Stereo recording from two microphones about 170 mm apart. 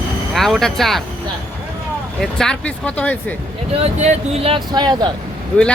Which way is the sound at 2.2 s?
5° left (ahead or behind).